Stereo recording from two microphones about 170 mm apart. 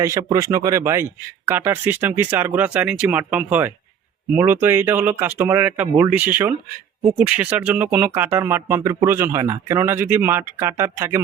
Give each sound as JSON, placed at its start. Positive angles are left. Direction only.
{"t": 0.0, "sound": "speech", "side_deg": -20}